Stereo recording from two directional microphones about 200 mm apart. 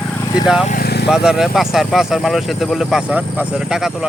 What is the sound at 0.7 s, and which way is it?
Vehicle, 50° left (ahead or behind).